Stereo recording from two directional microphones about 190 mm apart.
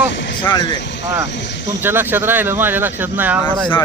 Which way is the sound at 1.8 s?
10° right (ahead or behind).